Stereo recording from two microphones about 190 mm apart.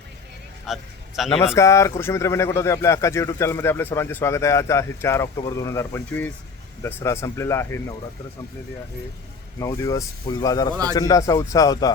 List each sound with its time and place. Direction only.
0.7 s a man's voice: centre (ahead or behind)
1.5 s speech: 15° left (ahead or behind)
9.6 s speech: 15° left (ahead or behind)